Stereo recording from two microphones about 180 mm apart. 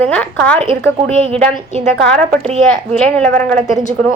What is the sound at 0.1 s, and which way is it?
Speech, 5° left (ahead or behind).